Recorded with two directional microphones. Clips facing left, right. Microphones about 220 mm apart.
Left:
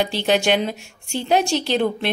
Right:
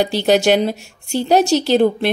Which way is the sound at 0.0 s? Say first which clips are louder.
Right 5 dB; 40° right (ahead or behind).